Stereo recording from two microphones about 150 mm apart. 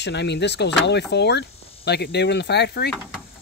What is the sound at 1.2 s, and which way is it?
Speech, 90° left.